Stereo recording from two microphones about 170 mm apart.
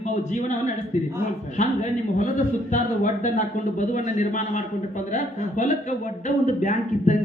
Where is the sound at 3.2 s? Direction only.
45° left (ahead or behind).